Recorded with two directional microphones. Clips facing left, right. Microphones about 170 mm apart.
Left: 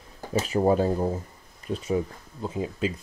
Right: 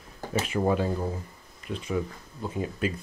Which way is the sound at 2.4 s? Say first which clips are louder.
Left 1 dB; 20° left (ahead or behind).